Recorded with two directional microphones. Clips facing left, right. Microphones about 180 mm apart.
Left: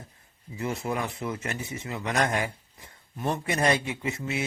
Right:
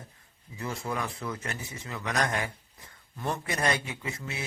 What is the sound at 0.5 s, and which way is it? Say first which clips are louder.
A man's voice: left 4 dB; 25° left (ahead or behind).